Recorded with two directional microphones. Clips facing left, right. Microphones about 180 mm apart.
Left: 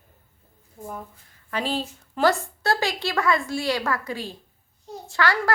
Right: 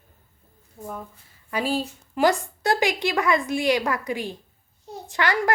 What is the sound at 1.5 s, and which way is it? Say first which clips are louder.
A woman's voice: right 2 dB; 10° right (ahead or behind).